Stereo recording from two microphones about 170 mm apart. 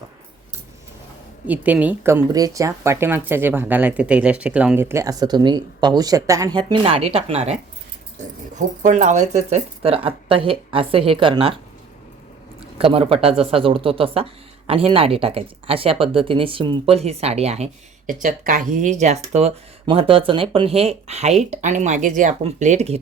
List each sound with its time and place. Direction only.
1.5 s speech: 10° right (ahead or behind); by 11.5 s 30° right (ahead or behind)
12.8 s speech: 35° right (ahead or behind)